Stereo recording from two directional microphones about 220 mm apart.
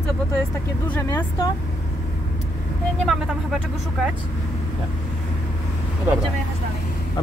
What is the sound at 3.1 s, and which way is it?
Speech, 5° right (ahead or behind).